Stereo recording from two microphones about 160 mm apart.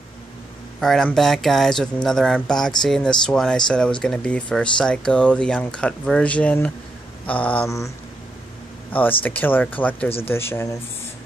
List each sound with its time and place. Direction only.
0.7 s speech: centre (ahead or behind)
9.2 s speech: 10° left (ahead or behind)